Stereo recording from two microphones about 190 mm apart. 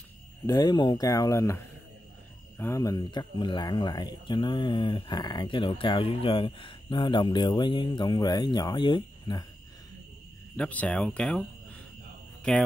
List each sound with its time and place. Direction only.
0.5 s speech: 20° left (ahead or behind)
10.5 s speech: 10° left (ahead or behind)
12.5 s speech: 5° left (ahead or behind)